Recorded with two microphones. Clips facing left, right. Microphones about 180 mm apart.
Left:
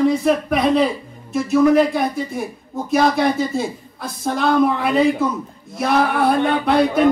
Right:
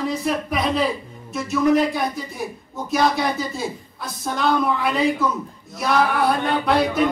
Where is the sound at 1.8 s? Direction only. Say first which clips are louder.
Left 4 dB; centre (ahead or behind).